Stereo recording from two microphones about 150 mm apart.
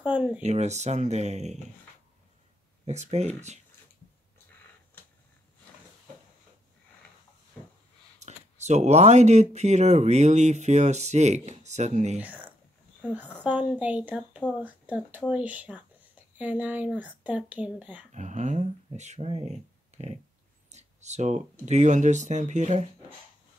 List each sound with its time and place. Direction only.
0.0 s speech: 10° right (ahead or behind)
0.4 s speech: 50° right (ahead or behind)
2.8 s speech: 45° right (ahead or behind)
8.2 s speech: 50° right (ahead or behind)
12.2 s speech: 10° right (ahead or behind)
18.1 s speech: 50° right (ahead or behind)
19.9 s a sound: 50° right (ahead or behind)
21.6 s speech: 50° right (ahead or behind)